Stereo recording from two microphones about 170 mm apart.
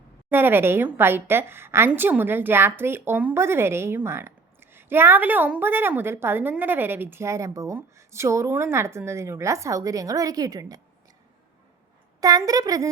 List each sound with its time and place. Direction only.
0.3 s a woman's voice: 10° right (ahead or behind)
12.2 s a woman's voice: 20° right (ahead or behind)